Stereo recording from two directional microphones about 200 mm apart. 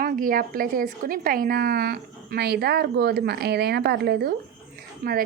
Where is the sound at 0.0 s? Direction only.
45° right (ahead or behind).